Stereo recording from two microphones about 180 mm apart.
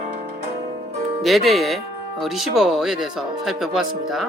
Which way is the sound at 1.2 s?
Centre (ahead or behind).